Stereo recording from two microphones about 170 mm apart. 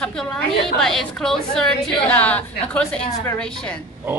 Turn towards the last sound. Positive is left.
turn(degrees=5)  # may be behind; listen again after turning